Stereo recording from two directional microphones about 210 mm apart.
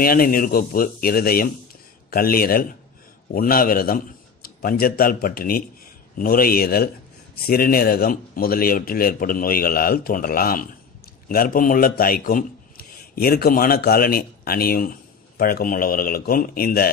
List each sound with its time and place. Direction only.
0.0 s a man's voice: 45° left (ahead or behind)